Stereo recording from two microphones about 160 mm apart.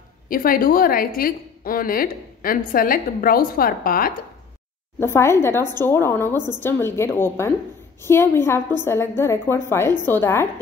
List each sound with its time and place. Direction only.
0.3 s a woman's voice: 60° left (ahead or behind)
5.0 s a woman's voice: 15° left (ahead or behind)